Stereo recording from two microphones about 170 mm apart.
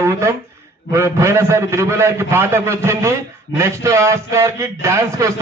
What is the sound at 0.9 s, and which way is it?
A man's voice, 15° right (ahead or behind).